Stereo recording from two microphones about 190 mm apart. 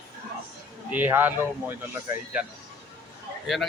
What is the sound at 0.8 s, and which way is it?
Speech, 10° right (ahead or behind).